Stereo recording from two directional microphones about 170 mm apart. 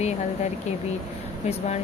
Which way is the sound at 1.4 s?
40° left (ahead or behind).